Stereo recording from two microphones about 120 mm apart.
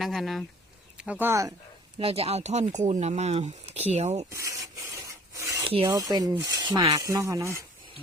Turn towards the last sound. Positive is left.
turn(degrees=-25)  # may be behind; listen again after turning